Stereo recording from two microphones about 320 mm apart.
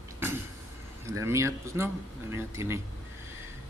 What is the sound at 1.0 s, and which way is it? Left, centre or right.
Speech, centre.